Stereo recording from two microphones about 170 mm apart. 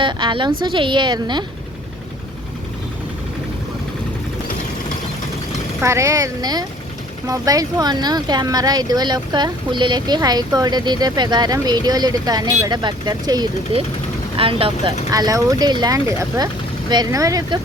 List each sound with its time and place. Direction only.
0.0 s speech: 30° right (ahead or behind)
5.8 s speech: 15° right (ahead or behind); by 14.9 s 30° right (ahead or behind)
15.1 s speech: 20° right (ahead or behind)